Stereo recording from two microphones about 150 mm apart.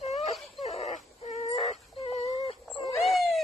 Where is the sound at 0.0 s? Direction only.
45° left (ahead or behind).